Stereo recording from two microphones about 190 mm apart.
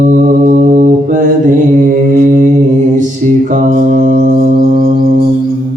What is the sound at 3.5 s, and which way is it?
Music, 45° right (ahead or behind).